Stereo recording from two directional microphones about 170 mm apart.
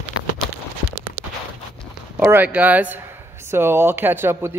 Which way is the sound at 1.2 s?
10° right (ahead or behind).